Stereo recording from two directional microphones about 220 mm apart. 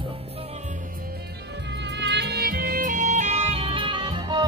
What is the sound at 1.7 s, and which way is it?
Music, 55° right (ahead or behind).